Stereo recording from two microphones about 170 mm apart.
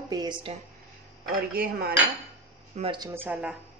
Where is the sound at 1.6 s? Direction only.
65° right (ahead or behind).